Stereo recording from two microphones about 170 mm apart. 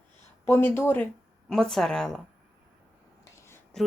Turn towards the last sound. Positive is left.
turn(degrees=5)  # may be behind; listen again after turning